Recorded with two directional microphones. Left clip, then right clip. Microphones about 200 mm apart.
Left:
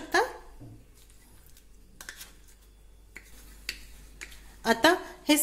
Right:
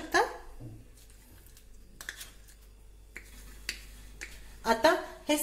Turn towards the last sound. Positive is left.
turn(degrees=45)  # may be behind; listen again after turning